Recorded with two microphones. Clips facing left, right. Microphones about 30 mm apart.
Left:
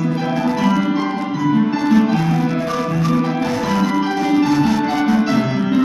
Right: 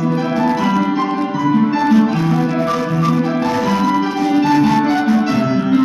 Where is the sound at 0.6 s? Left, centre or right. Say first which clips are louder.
Right 1 dB; centre.